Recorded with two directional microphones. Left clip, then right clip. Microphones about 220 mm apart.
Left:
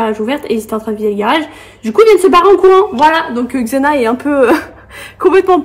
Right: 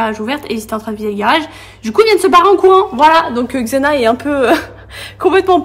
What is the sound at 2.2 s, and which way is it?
Speech, 40° right (ahead or behind).